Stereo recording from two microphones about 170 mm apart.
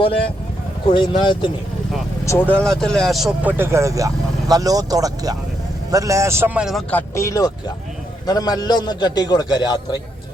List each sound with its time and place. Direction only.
0.9 s a man's voice: 25° left (ahead or behind)
2.2 s speech: 10° left (ahead or behind)
3.6 s speech: 15° right (ahead or behind)
6.9 s a man's voice: 15° left (ahead or behind)